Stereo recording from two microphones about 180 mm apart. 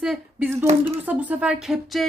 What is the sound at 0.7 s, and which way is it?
Speech, 35° right (ahead or behind).